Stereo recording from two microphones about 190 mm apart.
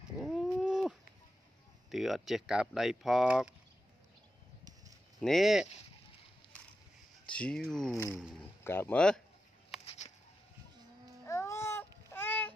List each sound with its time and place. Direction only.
0.2 s a sound: centre (ahead or behind)
1.9 s speech: centre (ahead or behind)
5.2 s speech: centre (ahead or behind)
7.2 s speech: 5° left (ahead or behind)
8.6 s speech: 10° left (ahead or behind)
9.8 s bird: 35° left (ahead or behind)
11.2 s babbling: 15° left (ahead or behind)
12.1 s a sound: 10° left (ahead or behind)